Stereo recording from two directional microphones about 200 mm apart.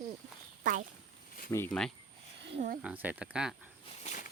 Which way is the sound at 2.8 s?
5° right (ahead or behind).